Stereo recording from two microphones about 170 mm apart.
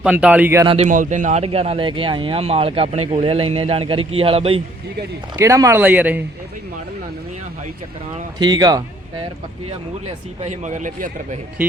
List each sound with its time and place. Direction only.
0.0 s speech: 5° right (ahead or behind)
0.6 s speech: 30° right (ahead or behind)
0.9 s speech: 50° right (ahead or behind); by 4.6 s 35° right (ahead or behind)
5.4 s speech: 15° right (ahead or behind)
8.4 s speech: 25° right (ahead or behind)
10.4 s speech: 45° right (ahead or behind)